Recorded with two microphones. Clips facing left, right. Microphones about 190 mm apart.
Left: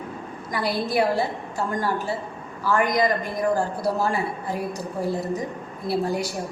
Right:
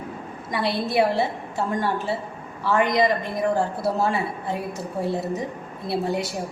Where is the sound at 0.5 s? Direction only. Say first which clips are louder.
Right 1 dB; 25° right (ahead or behind).